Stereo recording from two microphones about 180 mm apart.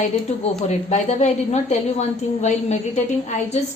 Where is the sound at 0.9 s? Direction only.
40° left (ahead or behind).